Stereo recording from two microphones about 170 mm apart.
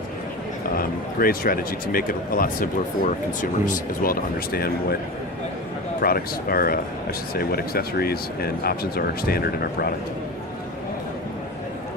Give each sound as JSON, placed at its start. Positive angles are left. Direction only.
{"t": 0.8, "sound": "speech", "side_deg": 60}
{"t": 6.0, "sound": "speech", "side_deg": 60}